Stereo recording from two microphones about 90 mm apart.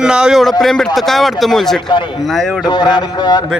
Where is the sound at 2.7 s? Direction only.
55° left (ahead or behind).